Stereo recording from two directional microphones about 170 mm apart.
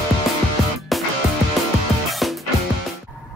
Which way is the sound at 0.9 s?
Centre (ahead or behind).